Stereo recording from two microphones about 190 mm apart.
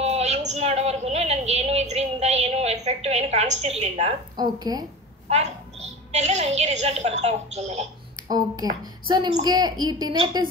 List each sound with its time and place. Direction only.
0.0 s a woman's voice: 35° right (ahead or behind)
4.4 s a woman's voice: 20° right (ahead or behind)
5.3 s a woman's voice: 35° right (ahead or behind)
8.3 s a woman's voice: 20° right (ahead or behind)